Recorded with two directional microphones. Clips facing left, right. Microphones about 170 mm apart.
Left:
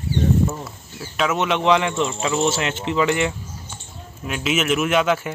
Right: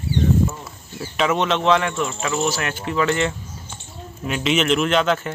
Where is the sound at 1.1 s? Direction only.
5° left (ahead or behind).